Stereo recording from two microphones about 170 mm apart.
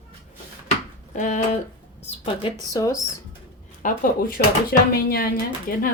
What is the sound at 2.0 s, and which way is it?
Speech, 35° left (ahead or behind).